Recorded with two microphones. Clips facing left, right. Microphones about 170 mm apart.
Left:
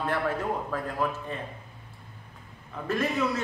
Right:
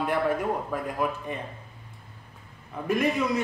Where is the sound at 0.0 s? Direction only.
15° right (ahead or behind).